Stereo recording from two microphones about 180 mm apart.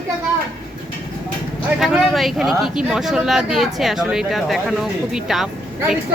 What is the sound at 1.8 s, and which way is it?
A woman's voice, centre (ahead or behind).